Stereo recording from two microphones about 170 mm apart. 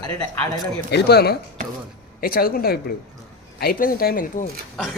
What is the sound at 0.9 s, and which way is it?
Speech, 75° left (ahead or behind).